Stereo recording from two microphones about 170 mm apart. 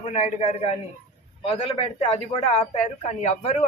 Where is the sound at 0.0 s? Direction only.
40° left (ahead or behind).